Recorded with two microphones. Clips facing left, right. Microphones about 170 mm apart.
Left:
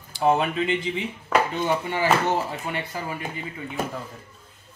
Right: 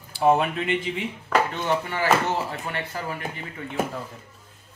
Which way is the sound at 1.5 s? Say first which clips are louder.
Left 1 dB; 15° left (ahead or behind).